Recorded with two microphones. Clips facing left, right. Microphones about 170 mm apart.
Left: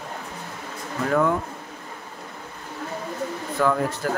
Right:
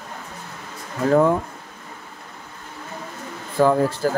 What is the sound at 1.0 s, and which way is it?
Speech, 30° right (ahead or behind).